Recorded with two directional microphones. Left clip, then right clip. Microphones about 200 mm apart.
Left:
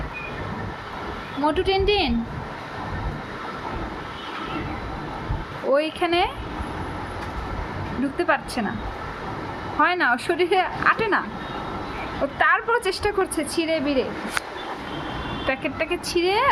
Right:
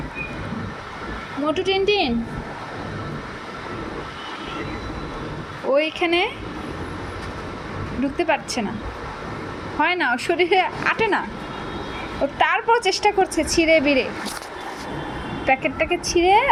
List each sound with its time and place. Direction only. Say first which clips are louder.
1.5 s a woman's voice: right 1 dB; 20° left (ahead or behind)
5.7 s speech: right 2 dB; centre (ahead or behind)
8.2 s speech: right 1 dB; centre (ahead or behind)
9.8 s speech: even; 5° left (ahead or behind)
12.4 s speech: right 1 dB; centre (ahead or behind)
15.4 s speech: right 6 dB; centre (ahead or behind)